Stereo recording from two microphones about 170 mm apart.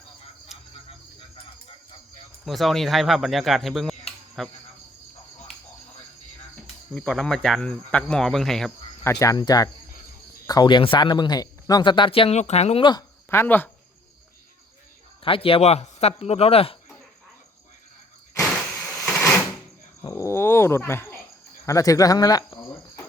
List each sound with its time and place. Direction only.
2.4 s speech: centre (ahead or behind)
6.9 s speech: centre (ahead or behind)
9.0 s speech: 20° left (ahead or behind)
13.3 s speech: 10° left (ahead or behind)
15.2 s speech: 35° left (ahead or behind)
19.1 s sewing machine: 15° left (ahead or behind)
20.0 s a sound: 20° left (ahead or behind)
21.7 s speech: 20° left (ahead or behind)